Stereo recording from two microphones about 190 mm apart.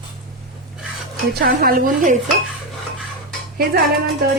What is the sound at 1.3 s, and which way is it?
Speech, 50° right (ahead or behind).